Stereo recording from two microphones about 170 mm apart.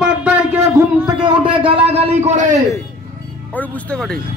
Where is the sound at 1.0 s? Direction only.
25° right (ahead or behind).